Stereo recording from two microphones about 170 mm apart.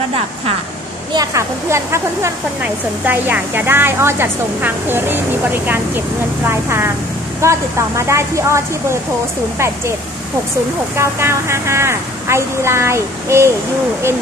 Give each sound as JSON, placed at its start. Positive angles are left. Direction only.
{"t": 1.1, "sound": "speech", "side_deg": -20}
{"t": 11.0, "sound": "speech", "side_deg": -15}